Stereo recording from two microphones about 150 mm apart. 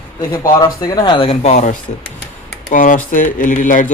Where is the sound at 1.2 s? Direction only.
50° left (ahead or behind).